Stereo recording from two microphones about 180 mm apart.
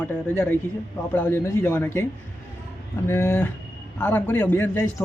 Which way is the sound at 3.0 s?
15° left (ahead or behind).